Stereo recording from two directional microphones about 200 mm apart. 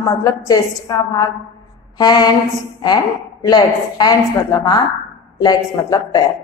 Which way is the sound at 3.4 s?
20° left (ahead or behind).